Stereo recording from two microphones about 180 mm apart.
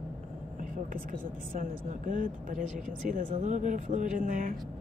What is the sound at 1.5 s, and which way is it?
Speech, 50° right (ahead or behind).